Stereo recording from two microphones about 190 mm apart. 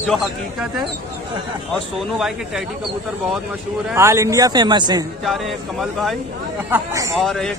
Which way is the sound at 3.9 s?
15° right (ahead or behind).